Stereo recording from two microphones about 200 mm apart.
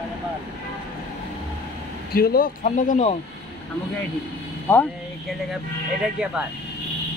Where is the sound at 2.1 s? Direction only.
50° left (ahead or behind).